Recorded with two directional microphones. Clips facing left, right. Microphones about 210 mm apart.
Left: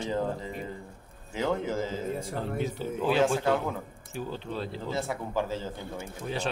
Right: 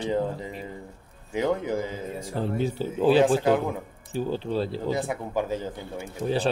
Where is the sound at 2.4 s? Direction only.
30° right (ahead or behind).